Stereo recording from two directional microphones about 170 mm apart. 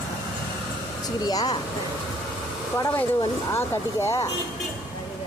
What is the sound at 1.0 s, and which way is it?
Speech, 20° left (ahead or behind).